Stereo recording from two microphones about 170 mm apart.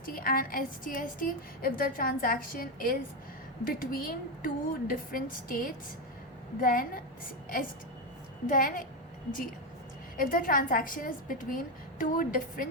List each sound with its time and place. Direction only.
0.0 s a woman's voice: 55° left (ahead or behind)
8.4 s a woman's voice: 55° left (ahead or behind)
10.2 s a woman's voice: 55° left (ahead or behind)